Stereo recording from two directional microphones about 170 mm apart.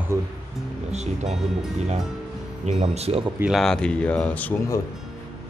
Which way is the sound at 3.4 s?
Centre (ahead or behind).